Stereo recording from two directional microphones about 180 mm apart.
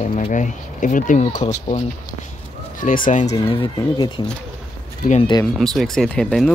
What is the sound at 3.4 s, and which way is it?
Speech, 25° left (ahead or behind).